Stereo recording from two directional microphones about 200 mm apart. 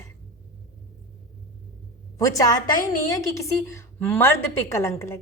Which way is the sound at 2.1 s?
15° left (ahead or behind).